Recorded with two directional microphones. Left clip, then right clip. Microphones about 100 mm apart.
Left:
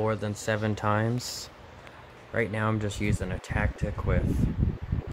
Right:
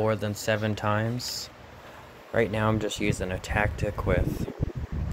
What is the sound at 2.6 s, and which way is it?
Speech, 10° right (ahead or behind).